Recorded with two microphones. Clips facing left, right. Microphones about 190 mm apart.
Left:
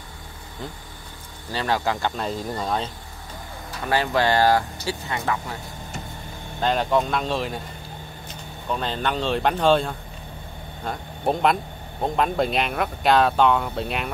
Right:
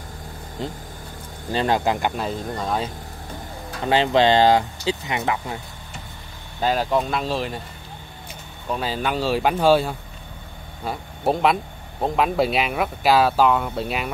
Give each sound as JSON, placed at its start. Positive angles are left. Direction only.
{"t": 1.5, "sound": "speech", "side_deg": -20}
{"t": 2.2, "sound": "speech", "side_deg": 0}
{"t": 3.8, "sound": "speech", "side_deg": -20}
{"t": 6.6, "sound": "speech", "side_deg": -5}
{"t": 8.6, "sound": "speech", "side_deg": -5}